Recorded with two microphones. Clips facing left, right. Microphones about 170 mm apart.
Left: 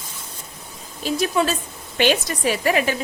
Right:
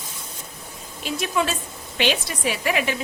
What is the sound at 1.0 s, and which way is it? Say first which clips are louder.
A woman's voice: left 4 dB; 35° left (ahead or behind).